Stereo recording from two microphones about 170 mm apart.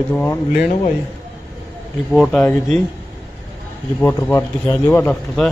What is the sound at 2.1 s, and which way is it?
Speech, 5° left (ahead or behind).